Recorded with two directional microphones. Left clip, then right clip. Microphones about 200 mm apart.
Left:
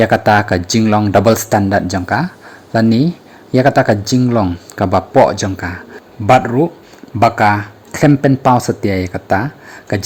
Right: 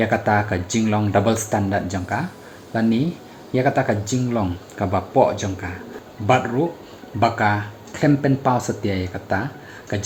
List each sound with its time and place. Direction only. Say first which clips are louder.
0.0 s speech: left 8 dB; 50° left (ahead or behind)